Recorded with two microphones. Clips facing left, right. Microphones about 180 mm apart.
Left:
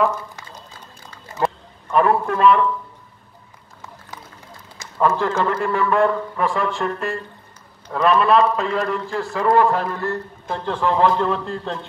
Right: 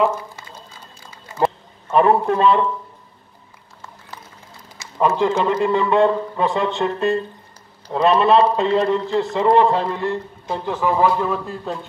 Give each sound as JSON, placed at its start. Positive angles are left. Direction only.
{"t": 1.9, "sound": "a man's voice", "side_deg": -25}
{"t": 4.9, "sound": "a man's voice", "side_deg": -15}